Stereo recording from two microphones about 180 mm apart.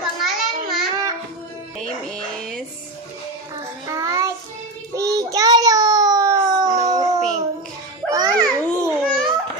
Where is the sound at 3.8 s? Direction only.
15° right (ahead or behind).